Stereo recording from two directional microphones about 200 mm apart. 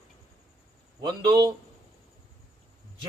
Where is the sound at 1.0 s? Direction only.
20° right (ahead or behind).